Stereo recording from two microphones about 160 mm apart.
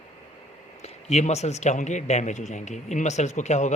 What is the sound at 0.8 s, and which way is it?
A man's voice, 45° left (ahead or behind).